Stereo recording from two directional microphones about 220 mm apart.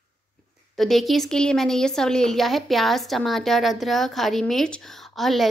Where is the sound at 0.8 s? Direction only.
Centre (ahead or behind).